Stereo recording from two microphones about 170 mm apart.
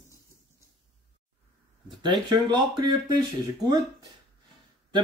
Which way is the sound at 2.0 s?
25° right (ahead or behind).